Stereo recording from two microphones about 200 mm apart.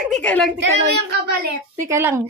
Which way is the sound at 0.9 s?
55° right (ahead or behind).